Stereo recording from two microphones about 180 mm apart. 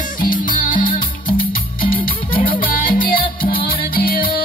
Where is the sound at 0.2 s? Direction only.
50° left (ahead or behind).